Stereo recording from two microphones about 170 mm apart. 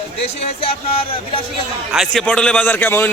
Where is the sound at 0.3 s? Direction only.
35° left (ahead or behind).